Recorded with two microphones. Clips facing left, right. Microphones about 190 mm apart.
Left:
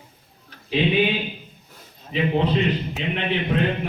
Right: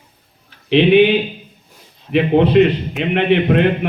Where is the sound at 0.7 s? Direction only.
75° right (ahead or behind).